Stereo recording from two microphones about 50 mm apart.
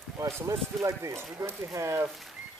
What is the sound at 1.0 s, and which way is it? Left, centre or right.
Speech, right.